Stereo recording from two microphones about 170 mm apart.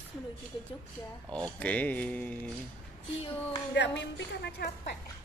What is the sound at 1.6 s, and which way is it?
Speech, 10° left (ahead or behind).